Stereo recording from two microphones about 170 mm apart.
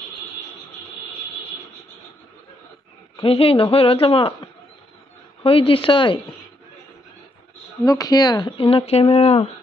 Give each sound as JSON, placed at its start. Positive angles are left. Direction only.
{"t": 3.2, "sound": "a woman's voice", "side_deg": 35}
{"t": 7.8, "sound": "speech", "side_deg": 20}